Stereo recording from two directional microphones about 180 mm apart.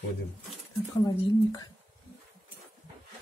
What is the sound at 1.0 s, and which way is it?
Speech, 20° left (ahead or behind).